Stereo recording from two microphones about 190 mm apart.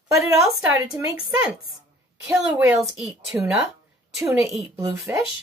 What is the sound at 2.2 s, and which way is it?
A woman's voice, 5° right (ahead or behind).